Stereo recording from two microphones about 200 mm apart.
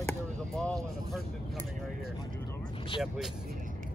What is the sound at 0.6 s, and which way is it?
Vehicle, 5° left (ahead or behind).